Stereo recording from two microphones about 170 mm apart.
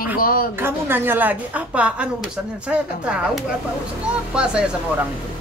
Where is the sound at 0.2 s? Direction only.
60° left (ahead or behind).